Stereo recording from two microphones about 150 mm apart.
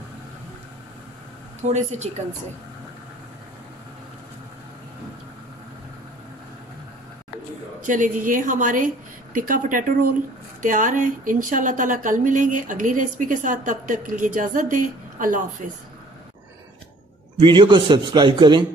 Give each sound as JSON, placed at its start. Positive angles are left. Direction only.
{"t": 1.6, "sound": "speech", "side_deg": -50}
{"t": 7.8, "sound": "speech", "side_deg": -60}
{"t": 17.4, "sound": "a man's voice", "side_deg": -30}